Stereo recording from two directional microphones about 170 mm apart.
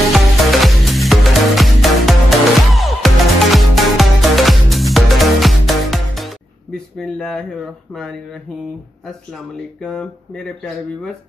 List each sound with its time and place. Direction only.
0.1 s music: centre (ahead or behind)
7.0 s a sound: 5° left (ahead or behind)
7.9 s speech: 5° left (ahead or behind)